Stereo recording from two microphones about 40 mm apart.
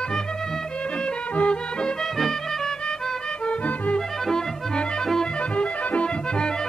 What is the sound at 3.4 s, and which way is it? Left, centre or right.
Music, left.